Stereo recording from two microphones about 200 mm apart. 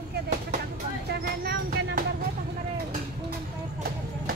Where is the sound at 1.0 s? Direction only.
50° right (ahead or behind).